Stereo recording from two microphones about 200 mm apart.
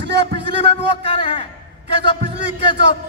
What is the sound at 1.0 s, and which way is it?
Speech, 25° left (ahead or behind).